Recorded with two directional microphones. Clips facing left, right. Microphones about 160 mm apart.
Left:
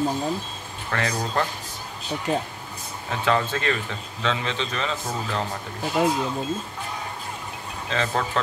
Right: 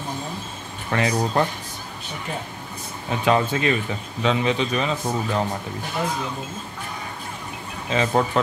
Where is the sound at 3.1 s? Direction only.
15° right (ahead or behind).